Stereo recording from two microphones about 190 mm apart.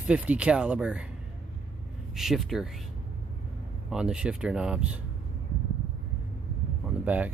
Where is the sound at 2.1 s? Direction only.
Centre (ahead or behind).